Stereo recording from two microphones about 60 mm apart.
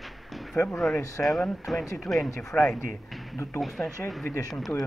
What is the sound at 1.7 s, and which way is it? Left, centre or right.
Speech, centre.